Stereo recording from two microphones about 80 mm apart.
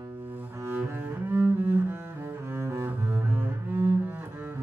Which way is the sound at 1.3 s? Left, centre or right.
Right.